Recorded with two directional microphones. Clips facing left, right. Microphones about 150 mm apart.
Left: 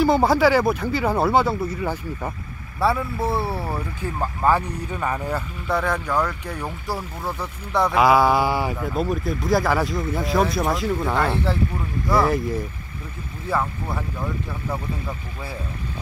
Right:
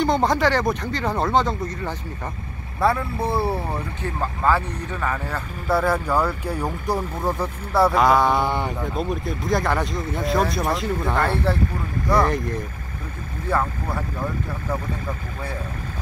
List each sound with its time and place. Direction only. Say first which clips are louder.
0.0 s a man's voice: left 3 dB; 5° left (ahead or behind)
4.2 s speech: left 1 dB; 15° left (ahead or behind)
5.7 s speech: right 3 dB; 5° right (ahead or behind)
7.9 s a man's voice: left 1 dB; 5° left (ahead or behind)